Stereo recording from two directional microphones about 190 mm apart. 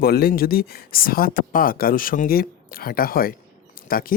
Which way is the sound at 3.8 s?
50° left (ahead or behind).